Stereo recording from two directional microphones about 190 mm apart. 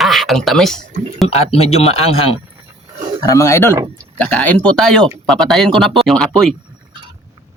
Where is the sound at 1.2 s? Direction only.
30° left (ahead or behind).